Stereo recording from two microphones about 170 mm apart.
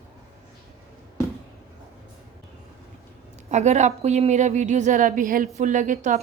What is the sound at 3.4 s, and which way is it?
A woman's voice, 40° right (ahead or behind).